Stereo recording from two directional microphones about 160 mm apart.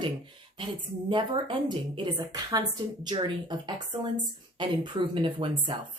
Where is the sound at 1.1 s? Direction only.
30° right (ahead or behind).